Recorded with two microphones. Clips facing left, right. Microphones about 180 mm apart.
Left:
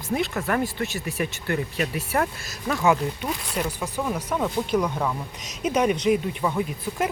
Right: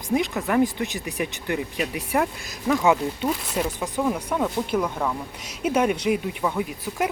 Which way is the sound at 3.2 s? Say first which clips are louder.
Right 3 dB; 5° right (ahead or behind).